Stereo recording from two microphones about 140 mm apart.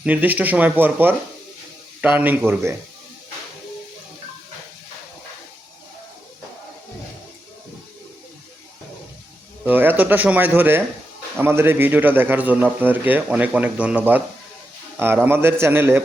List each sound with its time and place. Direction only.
0.0 s a man's voice: 10° right (ahead or behind)
9.6 s a man's voice: 15° right (ahead or behind)